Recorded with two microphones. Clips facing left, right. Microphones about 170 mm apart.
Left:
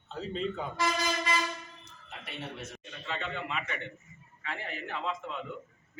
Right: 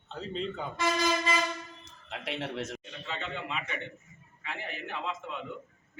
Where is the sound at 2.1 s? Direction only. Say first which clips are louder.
Right 6 dB; 90° right.